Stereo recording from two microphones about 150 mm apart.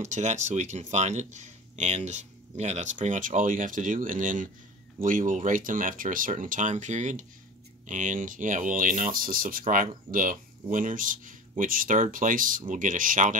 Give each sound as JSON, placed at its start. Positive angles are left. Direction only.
{"t": 0.0, "sound": "speech", "side_deg": -50}